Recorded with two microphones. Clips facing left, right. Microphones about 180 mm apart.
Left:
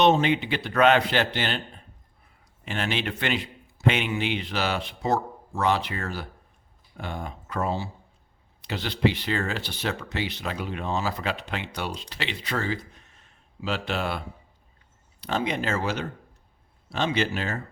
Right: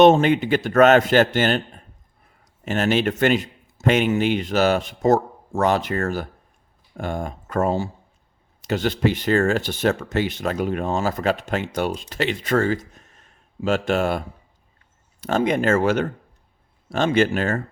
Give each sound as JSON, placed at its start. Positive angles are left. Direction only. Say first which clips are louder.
{"t": 0.0, "sound": "a man's voice", "louder": "right 7 dB", "side_deg": -50}